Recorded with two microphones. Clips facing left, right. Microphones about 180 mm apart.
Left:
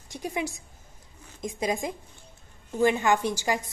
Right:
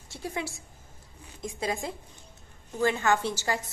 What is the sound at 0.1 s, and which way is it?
A woman's voice, 15° left (ahead or behind).